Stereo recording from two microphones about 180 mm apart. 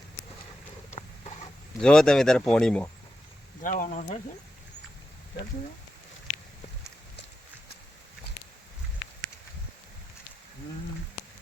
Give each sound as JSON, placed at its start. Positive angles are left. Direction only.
{"t": 1.8, "sound": "speech", "side_deg": 5}
{"t": 3.6, "sound": "speech", "side_deg": 45}